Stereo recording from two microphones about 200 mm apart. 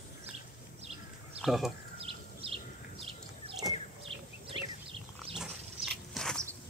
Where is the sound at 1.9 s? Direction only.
30° right (ahead or behind).